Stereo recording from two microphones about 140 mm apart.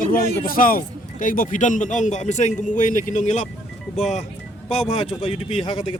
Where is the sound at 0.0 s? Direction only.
90° left.